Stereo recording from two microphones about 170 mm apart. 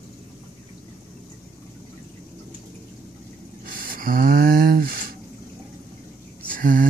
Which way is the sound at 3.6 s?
55° right (ahead or behind).